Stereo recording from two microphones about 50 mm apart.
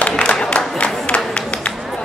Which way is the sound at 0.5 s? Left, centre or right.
Left.